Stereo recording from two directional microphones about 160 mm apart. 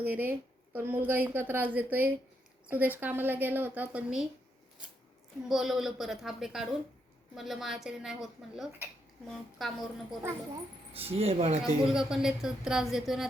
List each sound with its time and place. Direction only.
0.0 s a woman's voice: 10° right (ahead or behind)
5.4 s a woman's voice: centre (ahead or behind)
10.9 s speech: 40° right (ahead or behind)
11.9 s a woman's voice: 5° right (ahead or behind)